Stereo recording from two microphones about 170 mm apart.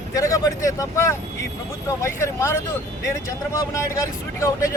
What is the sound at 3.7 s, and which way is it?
Speech, 15° left (ahead or behind).